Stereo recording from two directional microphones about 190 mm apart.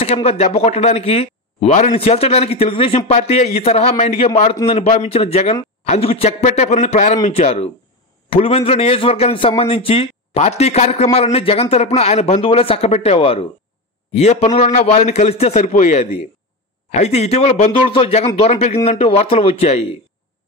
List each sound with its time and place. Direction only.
0.0 s speech: 35° left (ahead or behind)